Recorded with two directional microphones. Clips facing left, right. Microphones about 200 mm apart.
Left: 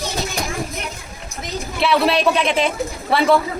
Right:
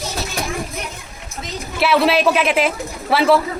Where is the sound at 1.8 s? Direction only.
Centre (ahead or behind).